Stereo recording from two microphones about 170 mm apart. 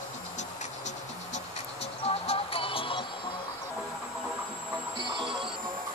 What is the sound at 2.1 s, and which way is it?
Music, 35° left (ahead or behind).